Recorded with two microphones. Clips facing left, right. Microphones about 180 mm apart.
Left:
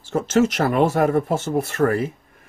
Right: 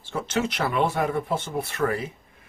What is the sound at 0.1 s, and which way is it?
Speech, 45° left (ahead or behind).